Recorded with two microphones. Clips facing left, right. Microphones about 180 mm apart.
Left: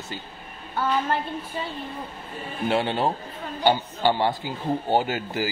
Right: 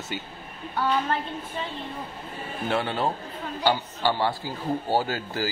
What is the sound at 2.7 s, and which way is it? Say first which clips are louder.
A man's voice: left 3 dB; 20° left (ahead or behind).